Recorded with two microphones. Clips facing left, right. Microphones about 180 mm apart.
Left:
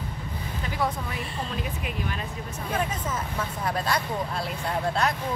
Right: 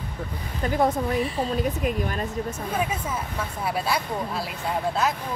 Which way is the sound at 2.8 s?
10° right (ahead or behind).